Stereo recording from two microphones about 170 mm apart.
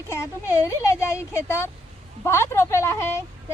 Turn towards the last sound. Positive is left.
turn(degrees=15)  # may be behind; listen again after turning